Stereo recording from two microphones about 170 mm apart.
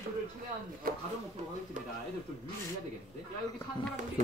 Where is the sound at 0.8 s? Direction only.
55° right (ahead or behind).